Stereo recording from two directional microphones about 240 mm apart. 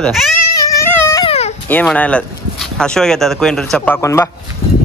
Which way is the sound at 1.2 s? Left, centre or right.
Left.